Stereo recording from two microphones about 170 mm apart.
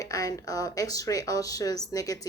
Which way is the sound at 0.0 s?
20° left (ahead or behind).